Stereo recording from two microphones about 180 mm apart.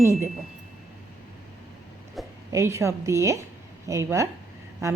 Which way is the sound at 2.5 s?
15° right (ahead or behind).